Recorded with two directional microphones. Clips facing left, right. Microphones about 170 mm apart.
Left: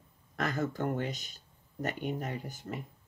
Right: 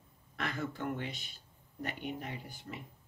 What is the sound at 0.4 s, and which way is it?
Speech, 40° left (ahead or behind).